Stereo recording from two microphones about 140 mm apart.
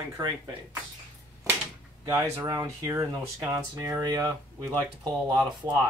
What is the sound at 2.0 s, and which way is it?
Speech, 25° right (ahead or behind).